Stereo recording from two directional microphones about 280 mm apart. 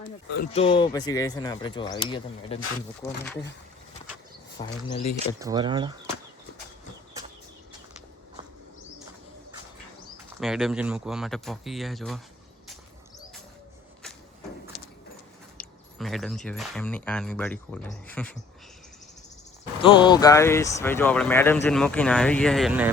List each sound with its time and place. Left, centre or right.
0.0 s a sound: left
0.5 s speech: centre
4.6 s speech: centre
5.4 s speech: centre
10.4 s speech: centre
15.5 s speech: centre
19.9 s speech: centre